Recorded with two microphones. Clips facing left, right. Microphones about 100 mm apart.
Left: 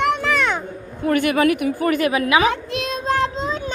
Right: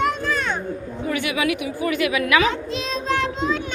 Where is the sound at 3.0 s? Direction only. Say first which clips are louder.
Left 2 dB; 40° left (ahead or behind).